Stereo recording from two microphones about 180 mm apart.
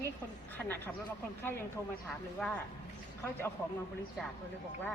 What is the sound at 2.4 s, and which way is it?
Speech, 5° left (ahead or behind).